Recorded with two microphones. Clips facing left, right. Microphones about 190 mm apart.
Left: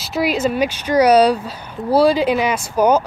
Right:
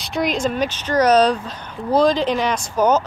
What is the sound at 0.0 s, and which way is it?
Speech, 5° left (ahead or behind).